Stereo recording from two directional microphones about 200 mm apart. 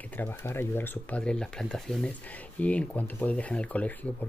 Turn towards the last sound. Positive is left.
turn(degrees=5)  # may be behind; listen again after turning